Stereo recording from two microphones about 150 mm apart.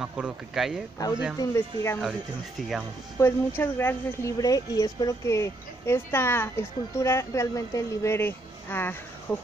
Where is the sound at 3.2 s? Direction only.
20° left (ahead or behind).